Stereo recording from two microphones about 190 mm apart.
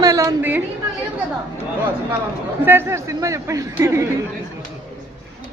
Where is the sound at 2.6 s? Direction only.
10° right (ahead or behind).